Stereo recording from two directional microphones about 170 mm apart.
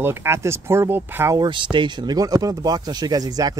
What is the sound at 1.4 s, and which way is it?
Speech, 30° right (ahead or behind).